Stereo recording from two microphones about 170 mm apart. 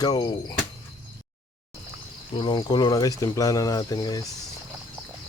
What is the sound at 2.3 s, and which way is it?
Speech, 30° left (ahead or behind).